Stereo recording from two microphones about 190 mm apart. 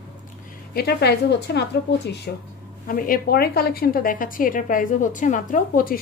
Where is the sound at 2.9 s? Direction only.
50° left (ahead or behind).